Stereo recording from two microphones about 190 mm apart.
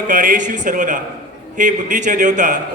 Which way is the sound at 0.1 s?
45° right (ahead or behind).